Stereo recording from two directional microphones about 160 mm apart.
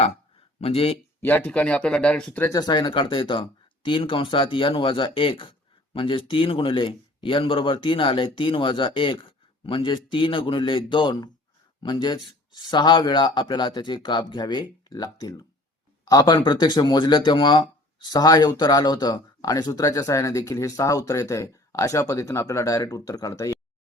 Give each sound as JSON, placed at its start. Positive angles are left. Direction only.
{"t": 0.6, "sound": "speech", "side_deg": 35}
{"t": 1.2, "sound": "speech", "side_deg": 10}
{"t": 2.5, "sound": "speech", "side_deg": 25}